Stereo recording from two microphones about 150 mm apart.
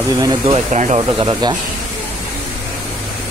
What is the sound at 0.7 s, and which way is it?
Speech, 55° right (ahead or behind).